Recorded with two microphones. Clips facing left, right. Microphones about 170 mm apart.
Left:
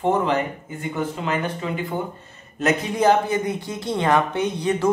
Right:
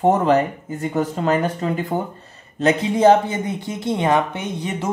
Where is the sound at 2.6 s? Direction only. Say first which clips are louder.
Right 4 dB; 25° right (ahead or behind).